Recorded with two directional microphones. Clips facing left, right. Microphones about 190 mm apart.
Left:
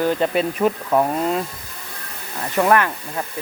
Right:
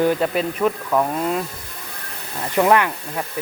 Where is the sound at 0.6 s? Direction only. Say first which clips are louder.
Left 1 dB; 15° left (ahead or behind).